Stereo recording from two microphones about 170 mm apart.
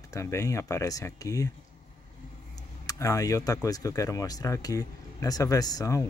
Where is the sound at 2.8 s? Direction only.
20° left (ahead or behind).